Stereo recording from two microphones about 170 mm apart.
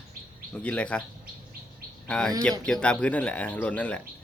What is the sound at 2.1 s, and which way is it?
Speech, 5° left (ahead or behind).